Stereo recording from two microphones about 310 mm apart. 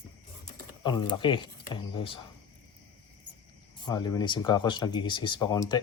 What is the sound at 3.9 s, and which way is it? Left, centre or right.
Speech, centre.